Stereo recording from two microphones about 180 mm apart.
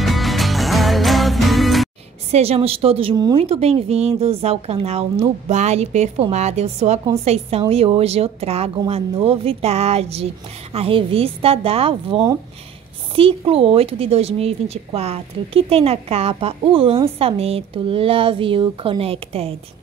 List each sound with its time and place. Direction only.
0.0 s music: centre (ahead or behind)
2.3 s speech: 35° right (ahead or behind)